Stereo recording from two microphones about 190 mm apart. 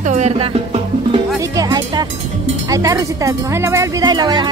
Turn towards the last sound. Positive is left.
turn(degrees=-20)  # may be behind; listen again after turning